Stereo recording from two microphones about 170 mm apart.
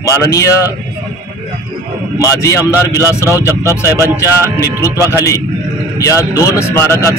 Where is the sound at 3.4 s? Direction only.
15° right (ahead or behind).